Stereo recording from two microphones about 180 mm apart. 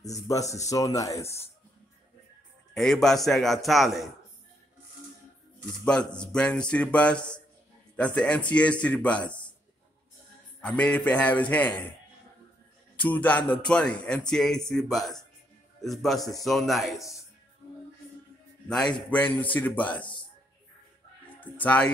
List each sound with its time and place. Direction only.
0.0 s speech: 20° left (ahead or behind)
2.7 s a man's voice: 5° left (ahead or behind)
6.1 s speech: 5° left (ahead or behind)
10.6 s speech: 5° left (ahead or behind)
12.9 s speech: 10° left (ahead or behind)
18.7 s speech: 5° left (ahead or behind)
21.6 s speech: 10° left (ahead or behind)